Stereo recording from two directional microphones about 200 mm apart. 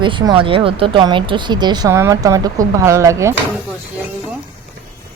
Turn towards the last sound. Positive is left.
turn(degrees=-15)  # may be behind; listen again after turning